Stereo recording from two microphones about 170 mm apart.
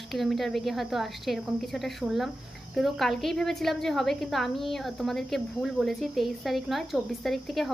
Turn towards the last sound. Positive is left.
turn(degrees=0)  # may be behind; listen again after turning